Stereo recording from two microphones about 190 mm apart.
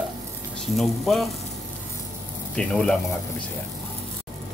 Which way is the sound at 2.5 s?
5° left (ahead or behind).